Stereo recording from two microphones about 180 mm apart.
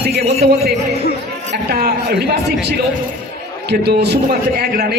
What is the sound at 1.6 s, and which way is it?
A man's voice, 65° right (ahead or behind).